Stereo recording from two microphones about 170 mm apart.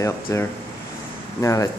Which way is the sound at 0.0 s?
20° left (ahead or behind).